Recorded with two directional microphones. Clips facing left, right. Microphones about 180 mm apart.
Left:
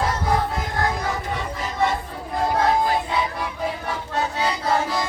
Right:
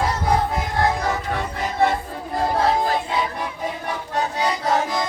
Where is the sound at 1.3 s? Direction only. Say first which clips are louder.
Right 3 dB; 55° right (ahead or behind).